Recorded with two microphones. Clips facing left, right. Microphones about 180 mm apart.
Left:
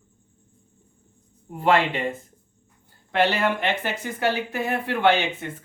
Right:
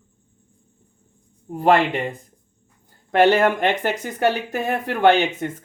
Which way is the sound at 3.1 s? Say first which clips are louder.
Right 6 dB; 50° right (ahead or behind).